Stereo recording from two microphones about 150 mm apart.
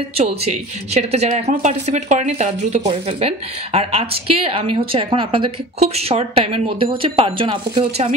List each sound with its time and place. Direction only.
0.3 s a woman's voice: 45° right (ahead or behind)